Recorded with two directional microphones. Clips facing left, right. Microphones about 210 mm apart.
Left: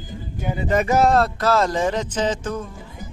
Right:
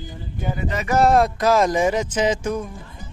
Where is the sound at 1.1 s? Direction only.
15° right (ahead or behind).